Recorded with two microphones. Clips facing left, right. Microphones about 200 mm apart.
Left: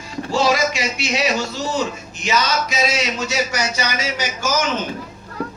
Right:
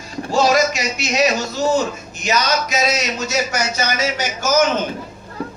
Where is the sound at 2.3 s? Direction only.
40° right (ahead or behind).